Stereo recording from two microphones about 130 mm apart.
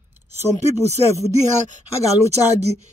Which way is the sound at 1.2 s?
70° right (ahead or behind).